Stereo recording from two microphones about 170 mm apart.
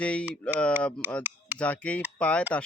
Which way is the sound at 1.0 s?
10° right (ahead or behind).